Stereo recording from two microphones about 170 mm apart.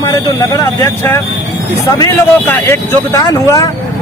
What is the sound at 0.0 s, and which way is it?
Speech, 20° left (ahead or behind).